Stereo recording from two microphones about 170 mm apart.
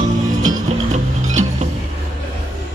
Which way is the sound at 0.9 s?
45° right (ahead or behind).